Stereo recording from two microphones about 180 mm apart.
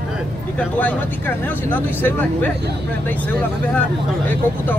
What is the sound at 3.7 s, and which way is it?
Speech, 10° left (ahead or behind).